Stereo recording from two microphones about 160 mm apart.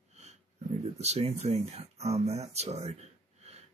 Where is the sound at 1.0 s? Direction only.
40° right (ahead or behind).